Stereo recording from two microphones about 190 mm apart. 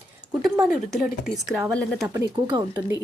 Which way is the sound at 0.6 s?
Centre (ahead or behind).